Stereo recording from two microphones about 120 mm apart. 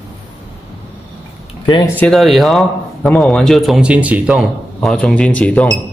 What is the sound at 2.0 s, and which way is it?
Speech, 5° left (ahead or behind).